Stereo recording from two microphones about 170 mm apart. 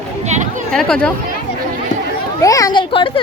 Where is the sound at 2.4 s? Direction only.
20° left (ahead or behind).